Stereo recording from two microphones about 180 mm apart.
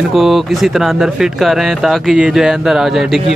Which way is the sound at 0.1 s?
Centre (ahead or behind).